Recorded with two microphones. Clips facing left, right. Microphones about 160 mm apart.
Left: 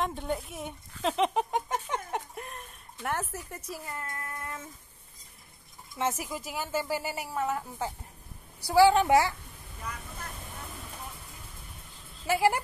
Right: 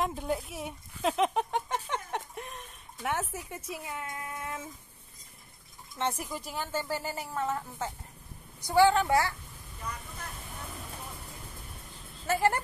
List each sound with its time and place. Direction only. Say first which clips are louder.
0.0 s speech: even; 5° right (ahead or behind)
1.9 s a sound: left 1 dB; 5° left (ahead or behind)
5.9 s a woman's voice: left 1 dB; 10° left (ahead or behind)
12.3 s a woman's voice: left 2 dB; 10° left (ahead or behind)